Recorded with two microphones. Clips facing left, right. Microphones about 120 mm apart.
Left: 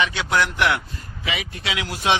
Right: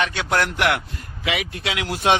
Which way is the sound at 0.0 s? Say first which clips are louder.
Even; 50° right (ahead or behind).